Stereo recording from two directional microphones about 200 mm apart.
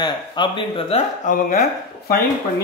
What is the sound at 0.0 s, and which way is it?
Speech, 25° left (ahead or behind).